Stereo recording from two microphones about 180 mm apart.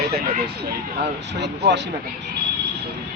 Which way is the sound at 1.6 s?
65° right (ahead or behind).